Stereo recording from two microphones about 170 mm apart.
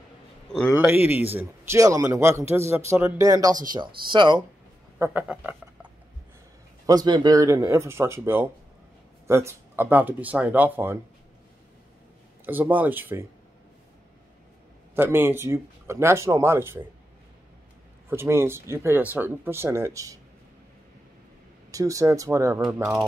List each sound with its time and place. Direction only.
0.5 s a sound: 5° left (ahead or behind)
0.7 s speech: 10° right (ahead or behind); by 4.4 s 25° right (ahead or behind)
4.9 s speech: 10° right (ahead or behind)
6.9 s speech: 25° right (ahead or behind)
12.4 s speech: 10° right (ahead or behind)
15.0 s speech: 15° right (ahead or behind)
18.1 s speech: 15° right (ahead or behind)
21.6 s speech: 20° right (ahead or behind)
22.6 s speech: 10° right (ahead or behind)